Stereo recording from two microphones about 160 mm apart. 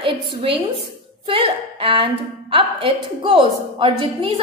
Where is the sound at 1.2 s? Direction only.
35° right (ahead or behind).